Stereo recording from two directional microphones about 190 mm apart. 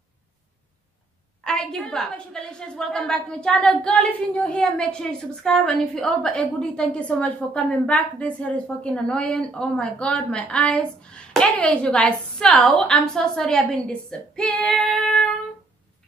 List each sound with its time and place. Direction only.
1.4 s a woman's voice: 5° left (ahead or behind)